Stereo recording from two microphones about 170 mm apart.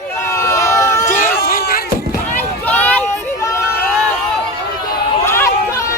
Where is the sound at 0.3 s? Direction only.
15° left (ahead or behind).